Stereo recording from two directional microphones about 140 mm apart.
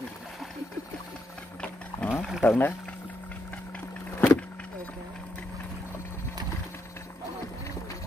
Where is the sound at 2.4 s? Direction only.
15° left (ahead or behind).